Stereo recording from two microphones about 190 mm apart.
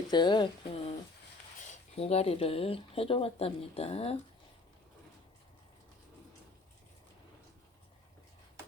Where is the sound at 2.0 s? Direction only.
30° left (ahead or behind).